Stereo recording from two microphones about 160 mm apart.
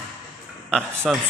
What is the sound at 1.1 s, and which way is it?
Speech, centre (ahead or behind).